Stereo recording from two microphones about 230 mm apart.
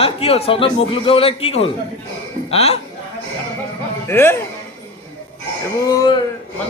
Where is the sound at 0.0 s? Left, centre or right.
Left.